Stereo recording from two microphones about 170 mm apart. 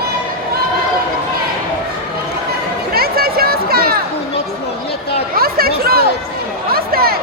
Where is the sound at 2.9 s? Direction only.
65° right (ahead or behind).